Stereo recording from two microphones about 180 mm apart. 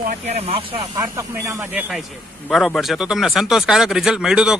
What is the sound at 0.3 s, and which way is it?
Speech, 35° right (ahead or behind).